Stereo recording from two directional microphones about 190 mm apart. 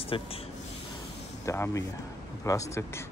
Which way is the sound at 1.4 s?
15° left (ahead or behind).